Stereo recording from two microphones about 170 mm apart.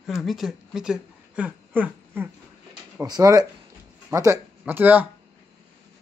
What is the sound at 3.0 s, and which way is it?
Speech, 20° right (ahead or behind).